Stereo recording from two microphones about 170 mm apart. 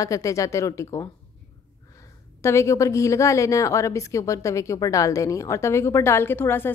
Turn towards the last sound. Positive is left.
turn(degrees=15)  # may be behind; listen again after turning